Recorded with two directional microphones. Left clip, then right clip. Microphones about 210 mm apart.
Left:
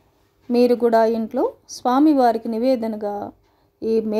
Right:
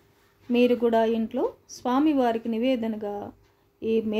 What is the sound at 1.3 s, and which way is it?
Speech, 30° left (ahead or behind).